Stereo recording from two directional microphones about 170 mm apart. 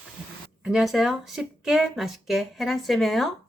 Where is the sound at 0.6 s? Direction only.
Centre (ahead or behind).